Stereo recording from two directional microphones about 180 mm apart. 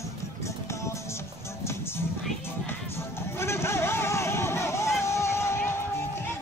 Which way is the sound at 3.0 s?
15° left (ahead or behind).